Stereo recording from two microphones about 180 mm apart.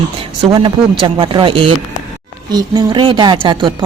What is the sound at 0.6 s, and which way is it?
Speech, 25° right (ahead or behind).